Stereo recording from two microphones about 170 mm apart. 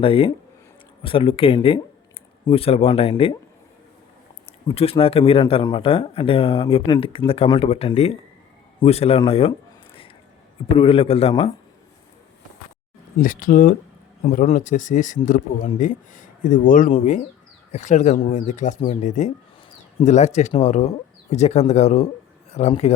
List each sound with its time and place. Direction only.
0.0 s speech: 30° left (ahead or behind)
4.7 s speech: 35° left (ahead or behind)
9.5 s a sound: 30° left (ahead or behind)
10.8 s speech: 30° left (ahead or behind)
13.1 s speech: 50° left (ahead or behind)